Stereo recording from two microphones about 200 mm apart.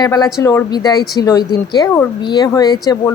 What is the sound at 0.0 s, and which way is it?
A woman's voice, 20° left (ahead or behind).